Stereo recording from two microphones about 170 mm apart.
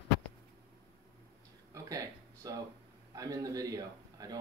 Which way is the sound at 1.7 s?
20° right (ahead or behind).